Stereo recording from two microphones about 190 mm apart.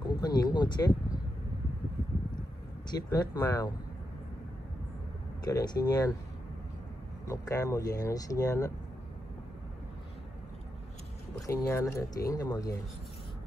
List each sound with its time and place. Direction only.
0.0 s speech: 20° left (ahead or behind)
2.9 s speech: 20° left (ahead or behind)
5.4 s speech: 20° left (ahead or behind)
7.2 s speech: 20° left (ahead or behind)
11.4 s speech: 15° left (ahead or behind)